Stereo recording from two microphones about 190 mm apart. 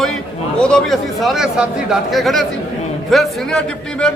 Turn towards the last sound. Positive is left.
turn(degrees=5)  # may be behind; listen again after turning